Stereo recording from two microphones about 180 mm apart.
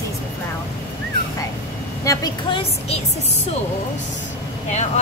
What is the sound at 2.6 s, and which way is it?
Speech, 35° left (ahead or behind).